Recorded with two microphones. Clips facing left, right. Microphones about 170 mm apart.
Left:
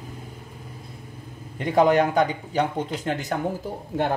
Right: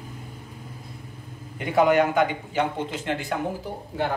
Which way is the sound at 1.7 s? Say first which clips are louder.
Left 1 dB; 35° left (ahead or behind).